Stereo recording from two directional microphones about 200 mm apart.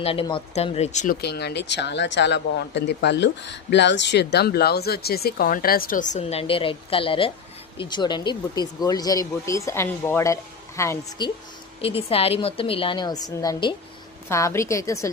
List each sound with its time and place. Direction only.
0.0 s speech: 30° left (ahead or behind)
1.2 s a woman's voice: 55° left (ahead or behind); by 11.3 s 15° left (ahead or behind)
11.8 s a woman's voice: 30° left (ahead or behind)